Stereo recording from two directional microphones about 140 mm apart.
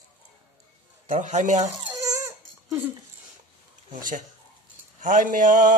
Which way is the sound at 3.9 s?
70° right (ahead or behind).